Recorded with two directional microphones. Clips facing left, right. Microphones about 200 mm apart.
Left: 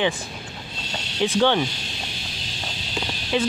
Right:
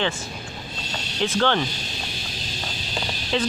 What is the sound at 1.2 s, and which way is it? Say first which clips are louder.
Speech: left 2 dB; 15° left (ahead or behind).